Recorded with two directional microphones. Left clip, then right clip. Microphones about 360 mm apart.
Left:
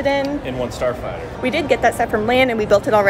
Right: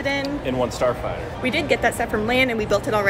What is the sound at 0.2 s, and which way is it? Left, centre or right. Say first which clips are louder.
Speech: left 1 dB; centre.